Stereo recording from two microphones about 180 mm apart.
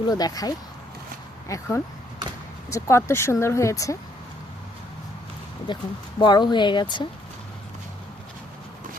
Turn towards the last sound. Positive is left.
turn(degrees=25)  # may be behind; listen again after turning